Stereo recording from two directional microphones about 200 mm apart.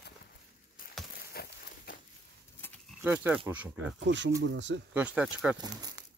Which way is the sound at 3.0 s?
10° right (ahead or behind).